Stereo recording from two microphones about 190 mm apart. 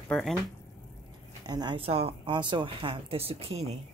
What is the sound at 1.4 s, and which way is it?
Speech, 20° right (ahead or behind).